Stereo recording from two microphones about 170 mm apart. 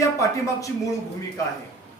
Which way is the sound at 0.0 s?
20° left (ahead or behind).